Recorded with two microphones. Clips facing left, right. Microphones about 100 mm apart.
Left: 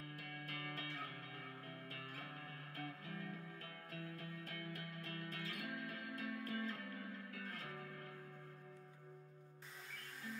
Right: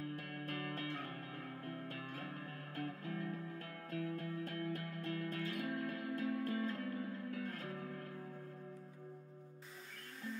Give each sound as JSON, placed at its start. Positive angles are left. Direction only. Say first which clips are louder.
{"t": 0.1, "sound": "music", "louder": "right 7 dB", "side_deg": -40}
{"t": 2.7, "sound": "music", "louder": "right 7 dB", "side_deg": -35}